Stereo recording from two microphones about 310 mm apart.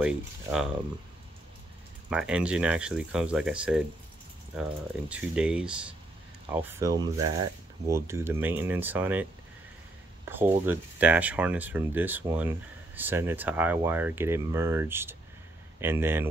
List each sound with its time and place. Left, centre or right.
0.0 s speech: centre
2.0 s speech: centre